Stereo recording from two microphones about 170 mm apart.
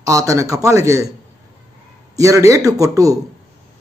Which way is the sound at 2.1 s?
20° right (ahead or behind).